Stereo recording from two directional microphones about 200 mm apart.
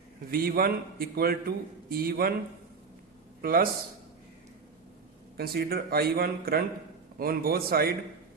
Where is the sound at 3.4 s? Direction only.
50° right (ahead or behind).